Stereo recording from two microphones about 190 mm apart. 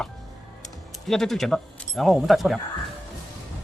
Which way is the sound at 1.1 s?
Centre (ahead or behind).